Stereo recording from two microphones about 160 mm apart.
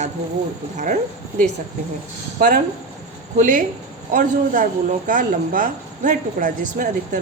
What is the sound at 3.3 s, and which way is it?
Speech, 55° right (ahead or behind).